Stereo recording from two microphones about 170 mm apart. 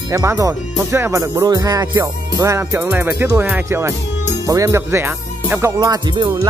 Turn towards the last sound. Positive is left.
turn(degrees=-25)  # may be behind; listen again after turning